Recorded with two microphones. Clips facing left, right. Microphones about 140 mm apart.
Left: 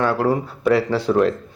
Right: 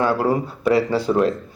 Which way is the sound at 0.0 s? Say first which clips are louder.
Even; centre (ahead or behind).